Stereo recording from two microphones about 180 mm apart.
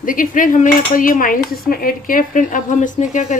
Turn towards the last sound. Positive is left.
turn(degrees=45)  # may be behind; listen again after turning